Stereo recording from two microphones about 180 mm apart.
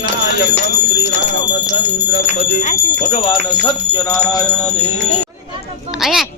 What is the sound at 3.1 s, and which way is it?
Speech, 25° left (ahead or behind).